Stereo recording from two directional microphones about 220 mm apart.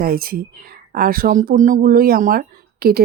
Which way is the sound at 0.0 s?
40° right (ahead or behind).